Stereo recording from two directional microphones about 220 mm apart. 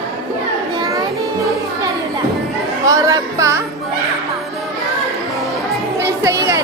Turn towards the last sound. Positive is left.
turn(degrees=-15)  # may be behind; listen again after turning